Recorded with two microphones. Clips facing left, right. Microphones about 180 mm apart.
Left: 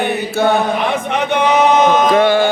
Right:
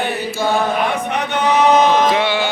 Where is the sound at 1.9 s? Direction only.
50° left (ahead or behind).